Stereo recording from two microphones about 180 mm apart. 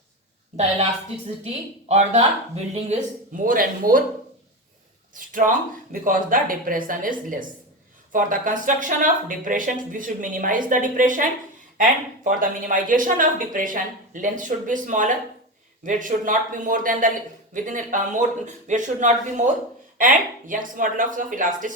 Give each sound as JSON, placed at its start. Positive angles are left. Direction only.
{"t": 1.9, "sound": "speech", "side_deg": -40}
{"t": 3.3, "sound": "speech", "side_deg": -50}
{"t": 5.1, "sound": "speech", "side_deg": -50}